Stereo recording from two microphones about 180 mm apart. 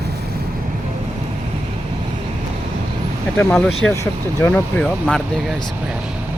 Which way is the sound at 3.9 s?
15° left (ahead or behind).